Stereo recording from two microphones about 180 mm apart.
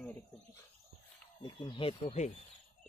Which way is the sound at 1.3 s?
25° left (ahead or behind).